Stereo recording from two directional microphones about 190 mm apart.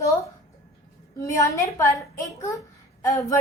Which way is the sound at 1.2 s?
15° left (ahead or behind).